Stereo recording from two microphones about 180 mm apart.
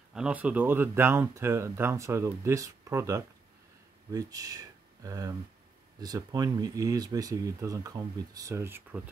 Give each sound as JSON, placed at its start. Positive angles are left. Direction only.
{"t": 0.1, "sound": "speech", "side_deg": -5}